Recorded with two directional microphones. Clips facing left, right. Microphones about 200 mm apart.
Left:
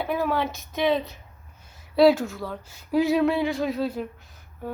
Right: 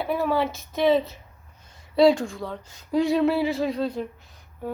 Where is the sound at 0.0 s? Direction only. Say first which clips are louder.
Right 1 dB; centre (ahead or behind).